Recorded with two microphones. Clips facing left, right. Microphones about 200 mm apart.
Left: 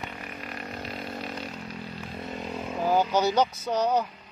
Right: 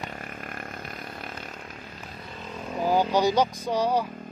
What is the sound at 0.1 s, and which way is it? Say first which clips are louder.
Chainsaw: even; 45° right (ahead or behind).